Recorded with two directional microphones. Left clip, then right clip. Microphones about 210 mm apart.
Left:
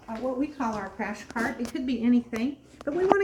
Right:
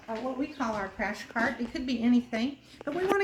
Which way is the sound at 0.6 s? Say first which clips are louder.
Left 1 dB; 25° right (ahead or behind).